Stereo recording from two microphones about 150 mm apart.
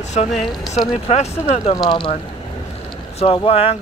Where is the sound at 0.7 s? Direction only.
45° left (ahead or behind).